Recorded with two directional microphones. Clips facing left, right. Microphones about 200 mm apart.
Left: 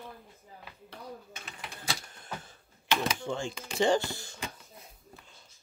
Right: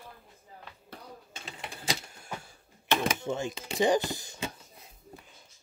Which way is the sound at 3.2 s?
20° right (ahead or behind).